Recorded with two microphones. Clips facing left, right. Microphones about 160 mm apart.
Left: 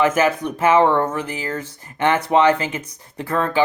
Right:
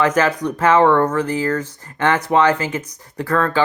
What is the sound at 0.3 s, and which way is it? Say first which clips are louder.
Speech: right 1 dB; 25° left (ahead or behind).